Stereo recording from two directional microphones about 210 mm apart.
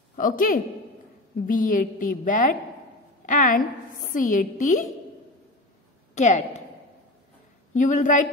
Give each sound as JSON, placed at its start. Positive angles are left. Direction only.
{"t": 0.1, "sound": "a woman's voice", "side_deg": 40}
{"t": 6.1, "sound": "a woman's voice", "side_deg": 35}
{"t": 7.7, "sound": "a woman's voice", "side_deg": 35}